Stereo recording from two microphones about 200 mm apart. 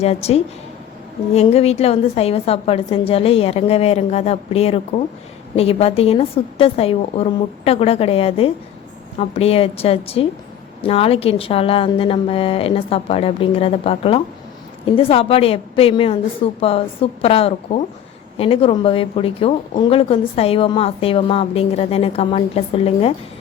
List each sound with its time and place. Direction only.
0.0 s a woman's voice: 30° left (ahead or behind)